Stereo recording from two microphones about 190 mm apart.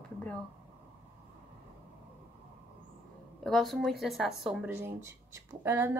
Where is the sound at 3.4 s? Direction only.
Centre (ahead or behind); by 6.0 s 15° right (ahead or behind).